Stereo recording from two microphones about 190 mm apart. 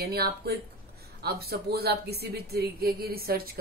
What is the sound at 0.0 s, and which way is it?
Speech, 55° right (ahead or behind).